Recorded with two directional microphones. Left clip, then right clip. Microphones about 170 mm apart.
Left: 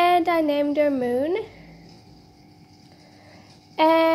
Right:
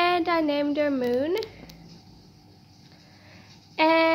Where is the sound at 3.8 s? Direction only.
10° left (ahead or behind).